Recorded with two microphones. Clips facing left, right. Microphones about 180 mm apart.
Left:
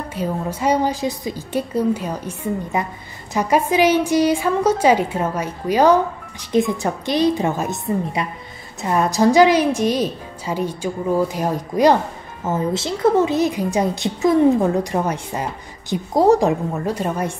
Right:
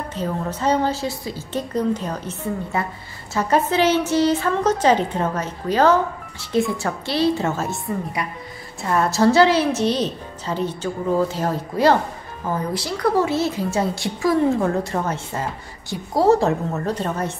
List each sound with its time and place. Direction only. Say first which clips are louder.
0.1 s a woman's voice: left 2 dB; 10° left (ahead or behind)